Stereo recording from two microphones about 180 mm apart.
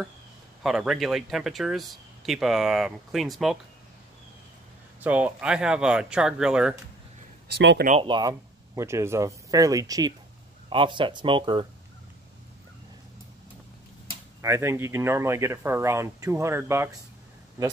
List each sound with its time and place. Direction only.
0.7 s speech: centre (ahead or behind)
5.0 s speech: 10° right (ahead or behind)
7.5 s speech: 65° right (ahead or behind)
8.0 s speech: 25° right (ahead or behind)
14.4 s speech: 15° right (ahead or behind)